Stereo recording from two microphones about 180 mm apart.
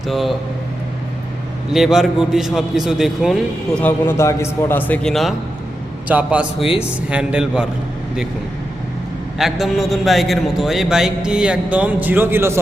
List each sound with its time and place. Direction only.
0.1 s a man's voice: centre (ahead or behind)
1.7 s a man's voice: centre (ahead or behind)
3.8 s a man's voice: 15° left (ahead or behind); by 7.7 s 5° right (ahead or behind)
9.4 s a man's voice: centre (ahead or behind)